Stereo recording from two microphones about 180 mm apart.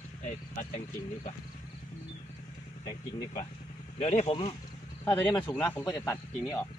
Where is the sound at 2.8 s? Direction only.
25° left (ahead or behind).